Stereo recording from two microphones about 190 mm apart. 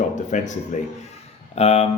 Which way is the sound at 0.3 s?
40° left (ahead or behind).